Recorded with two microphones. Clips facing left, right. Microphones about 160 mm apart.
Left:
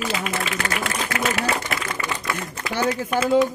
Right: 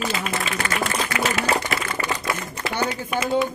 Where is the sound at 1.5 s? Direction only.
30° right (ahead or behind).